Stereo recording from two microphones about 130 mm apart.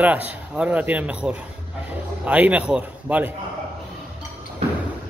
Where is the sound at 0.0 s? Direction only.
10° right (ahead or behind).